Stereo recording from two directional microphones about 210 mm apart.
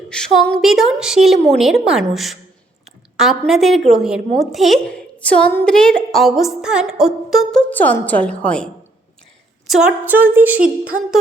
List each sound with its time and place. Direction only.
0.3 s a woman's voice: centre (ahead or behind)
9.6 s a sound: 5° right (ahead or behind)
10.6 s a woman's voice: 40° right (ahead or behind)